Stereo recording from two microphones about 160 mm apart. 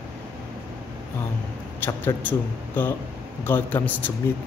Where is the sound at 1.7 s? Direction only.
10° left (ahead or behind).